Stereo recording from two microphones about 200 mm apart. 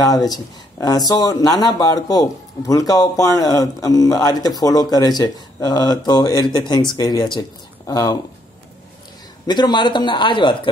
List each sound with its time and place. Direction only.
0.0 s speech: 20° left (ahead or behind)
9.5 s speech: 20° left (ahead or behind)